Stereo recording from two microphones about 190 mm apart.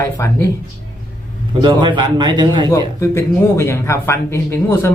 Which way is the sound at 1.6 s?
25° right (ahead or behind).